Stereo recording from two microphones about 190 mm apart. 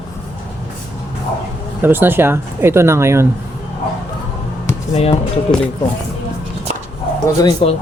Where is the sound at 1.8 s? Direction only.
10° right (ahead or behind).